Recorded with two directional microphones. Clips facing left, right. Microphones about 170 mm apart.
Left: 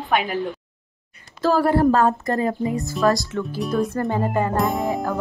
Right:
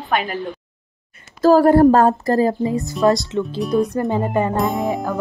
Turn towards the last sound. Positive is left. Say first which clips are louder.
# right 2 dB
turn(degrees=0)  # may be behind; listen again after turning